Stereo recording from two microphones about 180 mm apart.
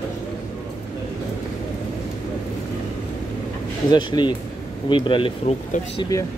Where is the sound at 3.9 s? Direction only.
25° left (ahead or behind).